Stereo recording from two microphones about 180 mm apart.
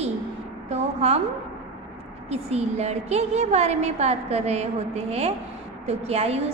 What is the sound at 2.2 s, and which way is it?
A woman's voice, 35° right (ahead or behind).